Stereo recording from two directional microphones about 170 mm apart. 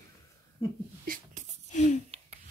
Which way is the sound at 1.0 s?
50° right (ahead or behind).